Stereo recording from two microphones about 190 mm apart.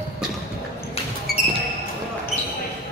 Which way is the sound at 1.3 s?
55° left (ahead or behind).